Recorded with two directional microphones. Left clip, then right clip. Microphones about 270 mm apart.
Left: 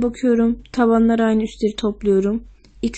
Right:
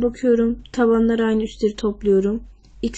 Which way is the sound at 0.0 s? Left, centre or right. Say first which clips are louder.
Even; centre.